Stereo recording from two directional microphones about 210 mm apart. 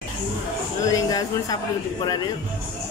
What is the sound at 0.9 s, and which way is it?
A woman's voice, 15° left (ahead or behind).